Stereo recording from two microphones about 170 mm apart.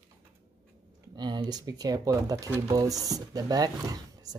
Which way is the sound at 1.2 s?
25° right (ahead or behind).